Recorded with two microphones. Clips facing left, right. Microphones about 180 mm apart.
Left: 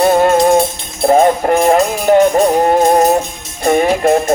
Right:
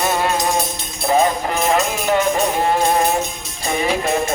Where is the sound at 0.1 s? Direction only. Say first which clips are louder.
Left 10 dB; 45° left (ahead or behind).